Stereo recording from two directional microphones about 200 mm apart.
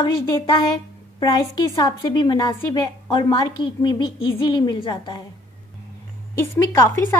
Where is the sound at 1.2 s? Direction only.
20° left (ahead or behind).